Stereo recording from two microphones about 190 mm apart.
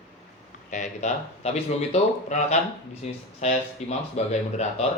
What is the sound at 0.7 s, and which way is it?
Speech, 40° left (ahead or behind).